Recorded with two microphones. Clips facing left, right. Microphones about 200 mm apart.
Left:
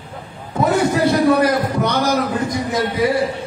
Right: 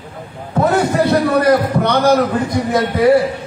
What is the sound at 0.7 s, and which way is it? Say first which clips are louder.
A man's voice: right 1 dB; 60° right (ahead or behind).